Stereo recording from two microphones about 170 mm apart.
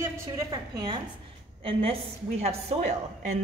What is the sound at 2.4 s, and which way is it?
Speech, 40° right (ahead or behind).